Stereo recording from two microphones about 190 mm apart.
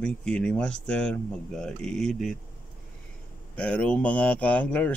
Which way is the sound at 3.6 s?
5° left (ahead or behind).